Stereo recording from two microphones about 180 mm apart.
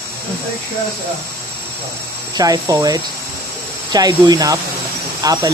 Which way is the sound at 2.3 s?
20° right (ahead or behind).